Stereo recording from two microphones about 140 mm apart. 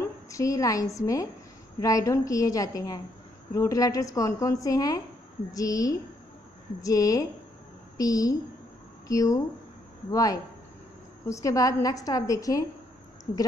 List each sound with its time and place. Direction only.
0.0 s a woman's voice: 25° left (ahead or behind)